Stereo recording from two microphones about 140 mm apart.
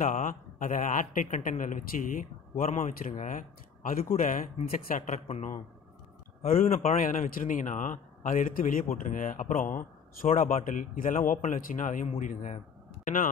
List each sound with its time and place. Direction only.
0.0 s speech: 70° left (ahead or behind); by 4.1 s 85° left
4.2 s speech: 70° left (ahead or behind)
4.6 s speech: 80° left; by 5.6 s 60° left (ahead or behind)
7.0 s speech: 70° left (ahead or behind)
13.0 s speech: 70° left (ahead or behind)